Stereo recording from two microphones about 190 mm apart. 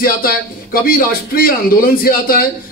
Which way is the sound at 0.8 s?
50° left (ahead or behind).